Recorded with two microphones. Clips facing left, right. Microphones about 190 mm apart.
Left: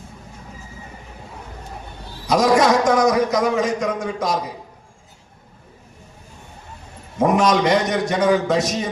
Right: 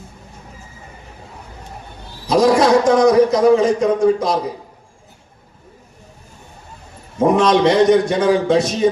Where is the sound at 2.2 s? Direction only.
30° right (ahead or behind).